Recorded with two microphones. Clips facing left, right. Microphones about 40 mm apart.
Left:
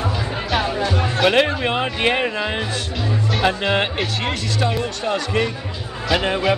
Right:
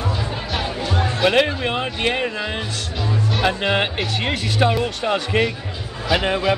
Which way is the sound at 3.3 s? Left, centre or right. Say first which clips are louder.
Left 1 dB; centre.